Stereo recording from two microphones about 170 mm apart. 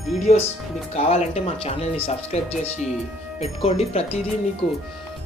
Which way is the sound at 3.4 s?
40° left (ahead or behind).